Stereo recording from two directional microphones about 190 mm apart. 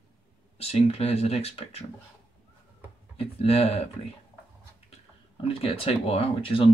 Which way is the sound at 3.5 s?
30° left (ahead or behind).